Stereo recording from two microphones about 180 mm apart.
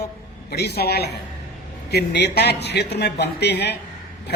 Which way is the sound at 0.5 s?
65° left (ahead or behind).